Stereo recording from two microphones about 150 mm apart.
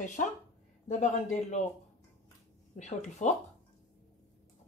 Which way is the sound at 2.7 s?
50° left (ahead or behind).